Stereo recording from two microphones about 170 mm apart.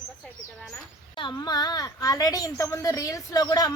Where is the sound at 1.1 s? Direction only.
30° left (ahead or behind).